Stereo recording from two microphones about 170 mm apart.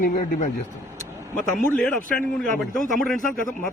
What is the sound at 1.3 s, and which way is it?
Speech, 5° left (ahead or behind).